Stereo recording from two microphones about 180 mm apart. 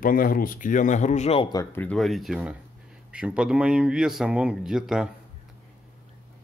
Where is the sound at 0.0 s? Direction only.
50° left (ahead or behind); by 5.1 s 5° right (ahead or behind).